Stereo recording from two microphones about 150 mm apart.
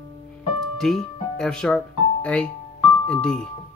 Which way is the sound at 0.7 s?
5° left (ahead or behind).